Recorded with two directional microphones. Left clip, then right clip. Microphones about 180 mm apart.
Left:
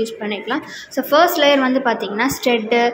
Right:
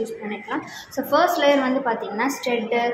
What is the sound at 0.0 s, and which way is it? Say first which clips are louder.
A woman's voice: left 6 dB; 25° left (ahead or behind).